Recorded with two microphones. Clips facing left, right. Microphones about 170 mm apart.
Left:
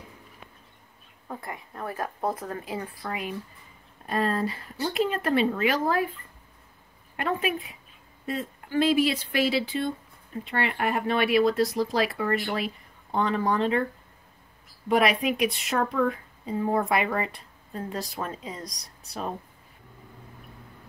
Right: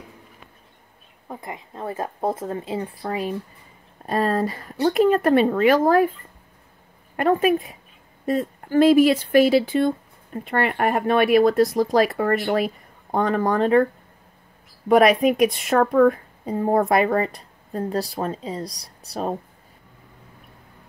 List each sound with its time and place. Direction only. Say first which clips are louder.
1.3 s a woman's voice: right 3 dB; 20° right (ahead or behind); by 6.1 s 50° right (ahead or behind)
7.2 s speech: right 9 dB; 45° right (ahead or behind)
14.9 s a woman's voice: right 8 dB; 45° right (ahead or behind)